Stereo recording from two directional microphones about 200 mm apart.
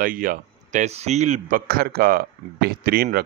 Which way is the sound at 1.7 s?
50° right (ahead or behind).